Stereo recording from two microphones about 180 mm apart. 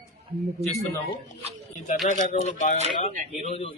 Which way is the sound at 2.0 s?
40° left (ahead or behind).